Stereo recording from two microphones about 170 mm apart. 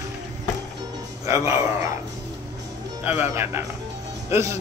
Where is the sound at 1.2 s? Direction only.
15° right (ahead or behind).